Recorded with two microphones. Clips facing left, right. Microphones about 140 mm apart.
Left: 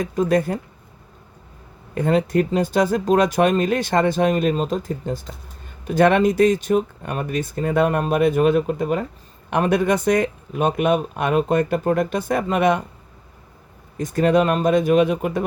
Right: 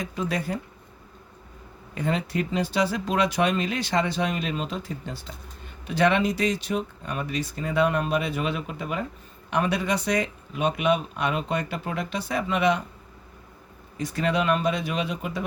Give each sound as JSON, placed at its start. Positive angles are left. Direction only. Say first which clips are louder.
{"t": 0.0, "sound": "speech", "louder": "left 10 dB", "side_deg": 50}
{"t": 2.0, "sound": "speech", "louder": "left 8 dB", "side_deg": 45}
{"t": 13.9, "sound": "speech", "louder": "left 8 dB", "side_deg": 45}